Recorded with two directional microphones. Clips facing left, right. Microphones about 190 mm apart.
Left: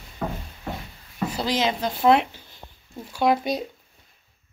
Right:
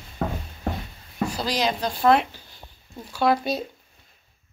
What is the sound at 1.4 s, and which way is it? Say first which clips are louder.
Speech: left 2 dB; 25° left (ahead or behind).